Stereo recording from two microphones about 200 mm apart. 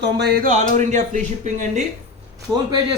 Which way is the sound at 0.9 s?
40° right (ahead or behind).